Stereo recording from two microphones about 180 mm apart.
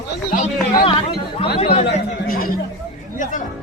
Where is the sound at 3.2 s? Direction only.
45° left (ahead or behind).